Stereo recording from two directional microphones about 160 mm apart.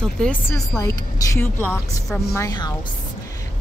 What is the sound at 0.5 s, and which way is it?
A woman's voice, 20° left (ahead or behind).